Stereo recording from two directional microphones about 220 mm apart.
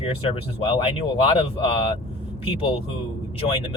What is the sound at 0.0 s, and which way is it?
Speech, 25° left (ahead or behind).